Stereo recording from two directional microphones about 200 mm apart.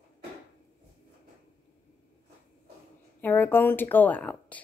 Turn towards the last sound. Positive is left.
turn(degrees=5)  # may be behind; listen again after turning